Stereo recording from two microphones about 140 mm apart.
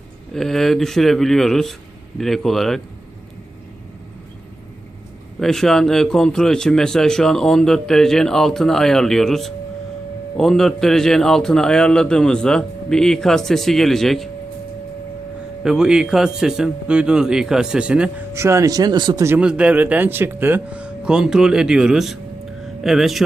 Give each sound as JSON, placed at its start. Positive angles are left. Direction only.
{"t": 0.3, "sound": "a man's voice", "side_deg": 0}
{"t": 5.4, "sound": "a man's voice", "side_deg": 5}
{"t": 15.6, "sound": "a man's voice", "side_deg": -5}
{"t": 18.3, "sound": "speech", "side_deg": -20}
{"t": 19.2, "sound": "speech", "side_deg": -15}
{"t": 22.6, "sound": "a sound", "side_deg": 0}